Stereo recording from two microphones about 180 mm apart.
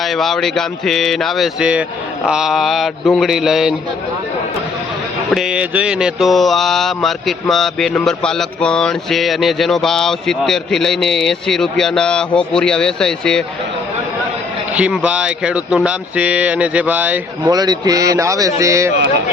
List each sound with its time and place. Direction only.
0.0 s mantra: centre (ahead or behind)
5.3 s mantra: 5° right (ahead or behind)
14.8 s speech: 5° right (ahead or behind)
17.4 s a man's voice: 20° right (ahead or behind)